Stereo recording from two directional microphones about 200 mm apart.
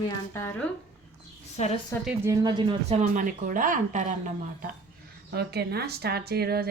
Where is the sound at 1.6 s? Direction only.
35° left (ahead or behind).